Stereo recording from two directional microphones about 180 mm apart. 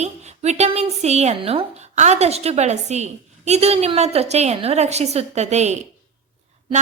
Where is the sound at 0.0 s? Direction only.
40° right (ahead or behind).